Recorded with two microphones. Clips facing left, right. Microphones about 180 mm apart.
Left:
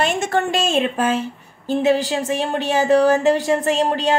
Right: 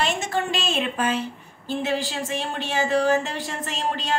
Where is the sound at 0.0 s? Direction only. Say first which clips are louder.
Left 5 dB; 50° left (ahead or behind).